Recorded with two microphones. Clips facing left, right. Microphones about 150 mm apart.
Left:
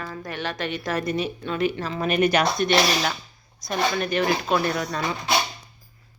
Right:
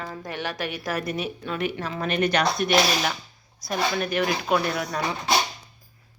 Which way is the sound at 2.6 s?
5° right (ahead or behind).